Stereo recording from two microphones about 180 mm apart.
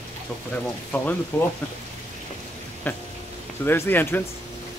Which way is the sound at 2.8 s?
10° left (ahead or behind).